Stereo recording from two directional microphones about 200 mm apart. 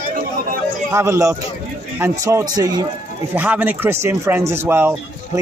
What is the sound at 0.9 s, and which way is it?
Speech, 15° right (ahead or behind).